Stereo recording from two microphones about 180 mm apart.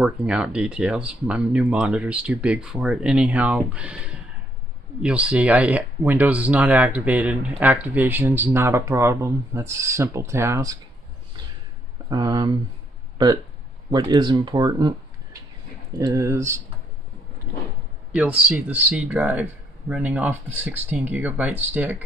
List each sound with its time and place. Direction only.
0.0 s speech: 5° right (ahead or behind)
12.1 s speech: 20° right (ahead or behind)
13.9 s speech: 25° right (ahead or behind)
16.0 s speech: 15° right (ahead or behind)
18.1 s speech: 5° right (ahead or behind)